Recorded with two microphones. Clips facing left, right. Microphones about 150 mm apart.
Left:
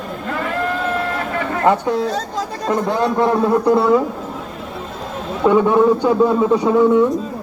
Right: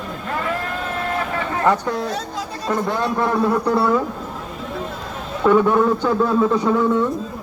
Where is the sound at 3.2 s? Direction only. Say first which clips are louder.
Left 3 dB; 20° left (ahead or behind).